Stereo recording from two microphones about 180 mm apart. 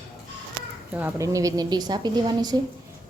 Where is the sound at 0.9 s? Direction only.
15° right (ahead or behind).